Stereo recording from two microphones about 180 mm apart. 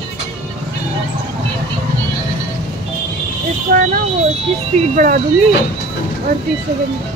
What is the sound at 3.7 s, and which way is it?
Smoke detector, 50° right (ahead or behind).